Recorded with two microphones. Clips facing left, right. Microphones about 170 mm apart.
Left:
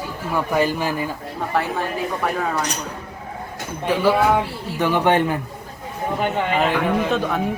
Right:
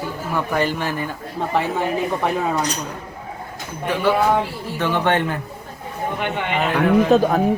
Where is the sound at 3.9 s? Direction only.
10° left (ahead or behind).